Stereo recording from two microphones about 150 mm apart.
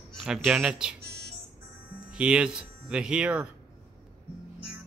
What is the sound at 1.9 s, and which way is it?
Speech, 5° right (ahead or behind).